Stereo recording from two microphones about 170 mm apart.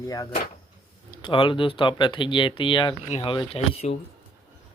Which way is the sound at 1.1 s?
30° left (ahead or behind).